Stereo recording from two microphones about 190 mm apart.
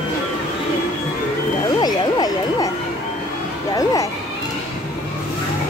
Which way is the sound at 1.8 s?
20° left (ahead or behind).